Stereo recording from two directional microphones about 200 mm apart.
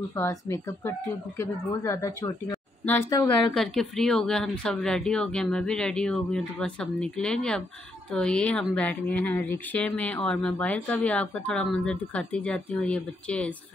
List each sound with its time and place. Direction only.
0.1 s speech: 15° left (ahead or behind)
3.5 s a woman's voice: centre (ahead or behind)